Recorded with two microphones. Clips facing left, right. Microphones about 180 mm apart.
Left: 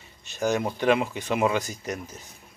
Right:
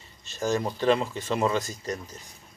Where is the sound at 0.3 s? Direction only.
15° left (ahead or behind).